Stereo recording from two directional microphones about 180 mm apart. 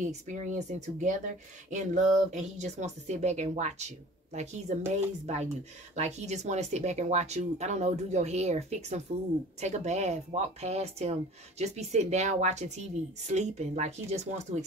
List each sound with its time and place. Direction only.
0.0 s speech: 40° right (ahead or behind)